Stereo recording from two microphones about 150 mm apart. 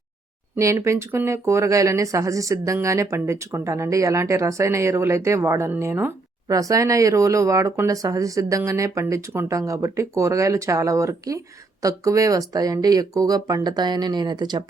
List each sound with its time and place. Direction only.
0.5 s speech: 20° right (ahead or behind)